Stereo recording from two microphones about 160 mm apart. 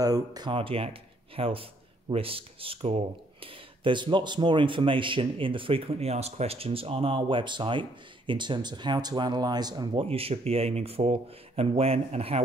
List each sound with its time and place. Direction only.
0.0 s speech: 25° right (ahead or behind)
10.0 s speech: 35° right (ahead or behind)